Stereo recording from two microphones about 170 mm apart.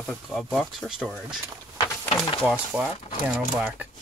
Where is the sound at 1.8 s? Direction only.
25° left (ahead or behind).